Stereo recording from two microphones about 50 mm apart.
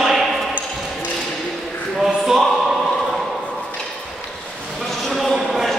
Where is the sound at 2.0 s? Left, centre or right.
Centre.